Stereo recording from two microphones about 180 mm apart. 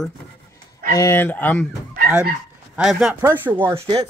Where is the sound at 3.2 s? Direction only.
15° right (ahead or behind).